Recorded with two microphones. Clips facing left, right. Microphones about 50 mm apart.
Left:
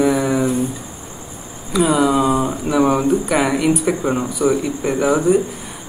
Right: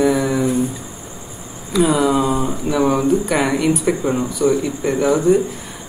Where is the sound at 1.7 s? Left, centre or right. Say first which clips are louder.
Even; centre.